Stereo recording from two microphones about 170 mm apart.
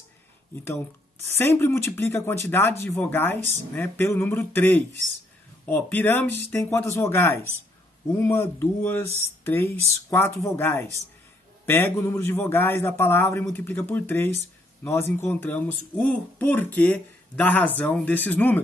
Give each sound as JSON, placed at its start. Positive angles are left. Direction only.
{"t": 1.3, "sound": "speech", "side_deg": 15}